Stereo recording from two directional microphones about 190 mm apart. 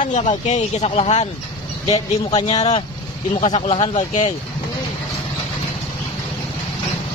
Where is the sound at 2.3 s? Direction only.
25° left (ahead or behind).